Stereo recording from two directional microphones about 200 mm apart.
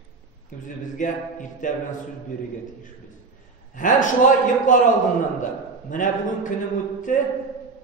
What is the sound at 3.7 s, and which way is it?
A man's voice, 40° left (ahead or behind).